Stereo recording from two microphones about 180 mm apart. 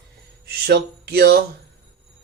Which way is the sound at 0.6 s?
60° right (ahead or behind).